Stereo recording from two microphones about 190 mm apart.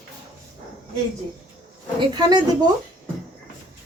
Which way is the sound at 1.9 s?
20° right (ahead or behind).